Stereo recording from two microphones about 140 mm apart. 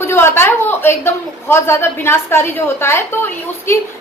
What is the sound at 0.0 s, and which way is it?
A woman's voice, 15° left (ahead or behind).